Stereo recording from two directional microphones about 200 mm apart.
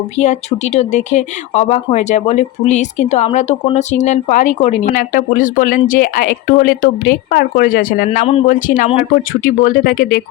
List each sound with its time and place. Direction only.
0.2 s speech: 35° left (ahead or behind)